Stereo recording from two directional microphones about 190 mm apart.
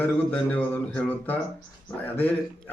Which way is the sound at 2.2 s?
10° left (ahead or behind).